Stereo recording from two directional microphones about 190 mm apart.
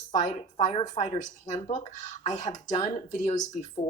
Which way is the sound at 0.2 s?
40° left (ahead or behind).